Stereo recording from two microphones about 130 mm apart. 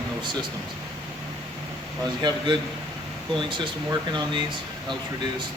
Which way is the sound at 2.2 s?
35° right (ahead or behind).